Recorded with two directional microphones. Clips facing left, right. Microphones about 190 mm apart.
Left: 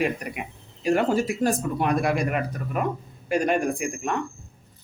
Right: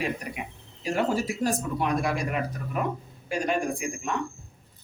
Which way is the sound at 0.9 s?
55° left (ahead or behind).